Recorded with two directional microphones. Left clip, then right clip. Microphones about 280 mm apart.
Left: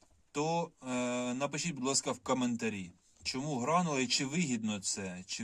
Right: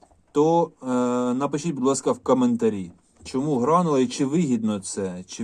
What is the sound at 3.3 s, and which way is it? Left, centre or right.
Speech, left.